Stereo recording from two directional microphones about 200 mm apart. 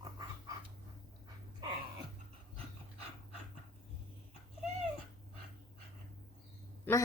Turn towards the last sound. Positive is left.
turn(degrees=10)  # may be behind; listen again after turning